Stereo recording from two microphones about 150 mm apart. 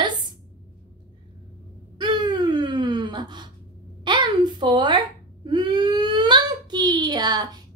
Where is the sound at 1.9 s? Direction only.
30° right (ahead or behind).